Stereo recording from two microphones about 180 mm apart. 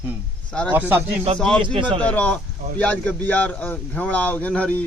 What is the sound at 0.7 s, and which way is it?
Speech, 10° right (ahead or behind).